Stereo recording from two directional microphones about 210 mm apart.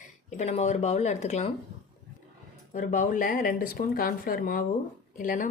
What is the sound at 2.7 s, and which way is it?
A woman's voice, 40° left (ahead or behind).